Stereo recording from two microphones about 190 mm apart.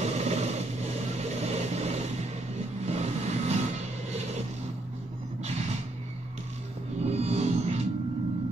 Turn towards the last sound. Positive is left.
turn(degrees=-35)  # may be behind; listen again after turning